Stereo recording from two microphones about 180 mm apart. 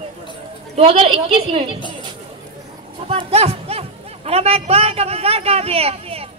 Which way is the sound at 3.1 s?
30° right (ahead or behind).